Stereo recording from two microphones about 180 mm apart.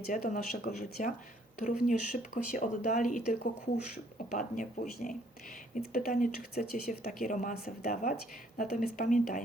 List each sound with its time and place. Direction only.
0.1 s speech: 55° left (ahead or behind)
0.8 s speech: 40° left (ahead or behind)
4.3 s speech: 45° left (ahead or behind)